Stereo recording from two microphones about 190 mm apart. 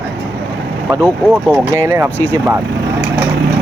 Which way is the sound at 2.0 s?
10° left (ahead or behind).